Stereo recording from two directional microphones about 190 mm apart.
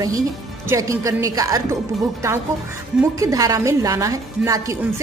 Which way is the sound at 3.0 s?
15° right (ahead or behind).